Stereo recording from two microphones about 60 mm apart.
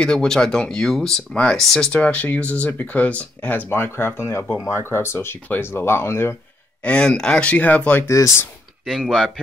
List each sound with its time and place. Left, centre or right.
0.0 s speech: centre
1.3 s speech: centre
1.6 s speech: centre
1.9 s speech: left
3.7 s speech: left
6.8 s speech: centre
8.8 s speech: centre